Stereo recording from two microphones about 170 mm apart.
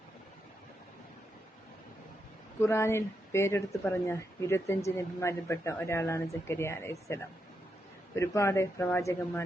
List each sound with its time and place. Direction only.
2.6 s speech: 15° left (ahead or behind)